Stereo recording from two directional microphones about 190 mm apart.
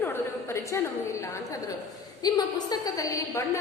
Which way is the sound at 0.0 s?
10° left (ahead or behind).